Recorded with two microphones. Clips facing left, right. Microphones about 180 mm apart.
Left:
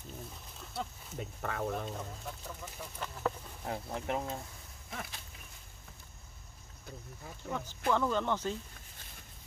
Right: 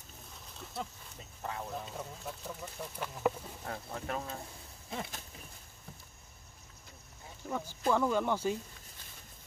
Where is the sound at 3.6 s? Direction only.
20° left (ahead or behind).